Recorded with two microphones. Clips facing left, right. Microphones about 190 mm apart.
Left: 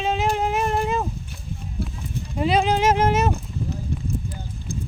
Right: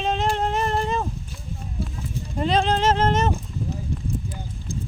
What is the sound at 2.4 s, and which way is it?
Speech, 10° left (ahead or behind).